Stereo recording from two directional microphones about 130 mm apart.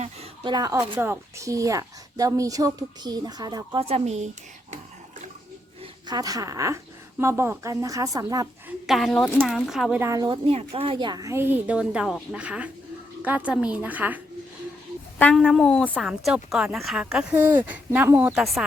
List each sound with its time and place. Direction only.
0.4 s a woman's voice: 30° right (ahead or behind)
3.8 s speech: 50° right (ahead or behind)
5.8 s a woman's voice: 30° right (ahead or behind)
8.9 s speech: centre (ahead or behind)
10.0 s a woman's voice: 25° right (ahead or behind)
10.2 s a woman's voice: 45° right (ahead or behind); by 14.2 s 15° right (ahead or behind)
15.4 s speech: centre (ahead or behind); by 18.3 s 15° right (ahead or behind)
18.3 s speech: centre (ahead or behind)